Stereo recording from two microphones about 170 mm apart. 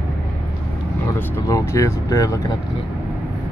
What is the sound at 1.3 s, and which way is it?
Speech, 15° left (ahead or behind).